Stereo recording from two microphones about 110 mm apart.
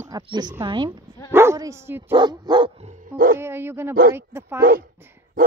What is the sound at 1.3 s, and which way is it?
Speech, 20° right (ahead or behind).